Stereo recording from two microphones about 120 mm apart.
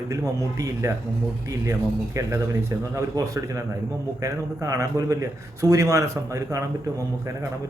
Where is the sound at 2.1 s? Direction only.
25° right (ahead or behind).